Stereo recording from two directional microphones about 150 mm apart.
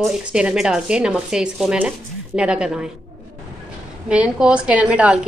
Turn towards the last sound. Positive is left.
turn(degrees=-10)  # may be behind; listen again after turning